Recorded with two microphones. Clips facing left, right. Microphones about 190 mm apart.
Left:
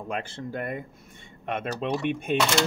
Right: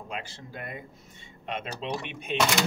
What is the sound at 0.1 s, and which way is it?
Speech, 55° left (ahead or behind).